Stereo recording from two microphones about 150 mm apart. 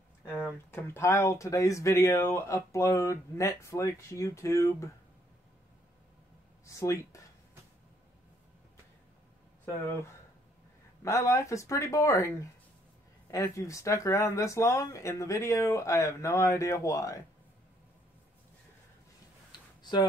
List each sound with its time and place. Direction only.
0.7 s speech: 15° left (ahead or behind)
6.6 s speech: 20° left (ahead or behind)
11.0 s speech: 20° left (ahead or behind)
19.8 s tick-tock: 30° left (ahead or behind)